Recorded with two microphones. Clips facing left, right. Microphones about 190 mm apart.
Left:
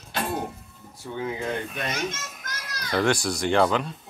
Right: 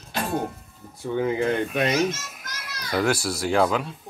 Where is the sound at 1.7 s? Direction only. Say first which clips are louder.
Right 8 dB; 60° right (ahead or behind).